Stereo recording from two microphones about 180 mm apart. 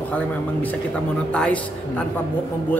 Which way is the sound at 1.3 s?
5° left (ahead or behind).